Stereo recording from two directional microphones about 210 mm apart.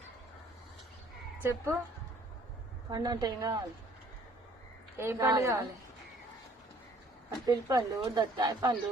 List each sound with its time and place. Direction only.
1.4 s a woman's voice: 15° right (ahead or behind)
2.9 s a woman's voice: 20° right (ahead or behind)
4.9 s a woman's voice: 10° right (ahead or behind)
7.3 s speech: 15° right (ahead or behind)